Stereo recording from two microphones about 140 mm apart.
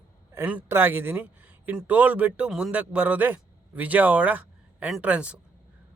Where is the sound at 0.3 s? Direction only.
15° right (ahead or behind).